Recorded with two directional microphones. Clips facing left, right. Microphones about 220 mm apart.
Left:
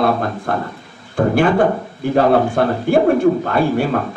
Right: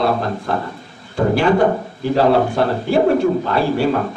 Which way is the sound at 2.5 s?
50° left (ahead or behind).